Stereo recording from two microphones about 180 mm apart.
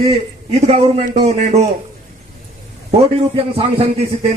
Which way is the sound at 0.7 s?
35° right (ahead or behind).